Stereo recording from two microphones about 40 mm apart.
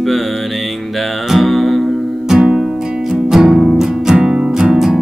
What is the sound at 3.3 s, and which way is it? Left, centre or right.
Music, centre.